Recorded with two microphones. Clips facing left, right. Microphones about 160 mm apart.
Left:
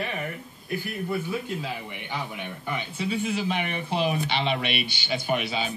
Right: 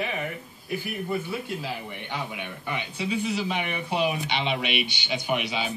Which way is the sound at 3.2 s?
45° left (ahead or behind).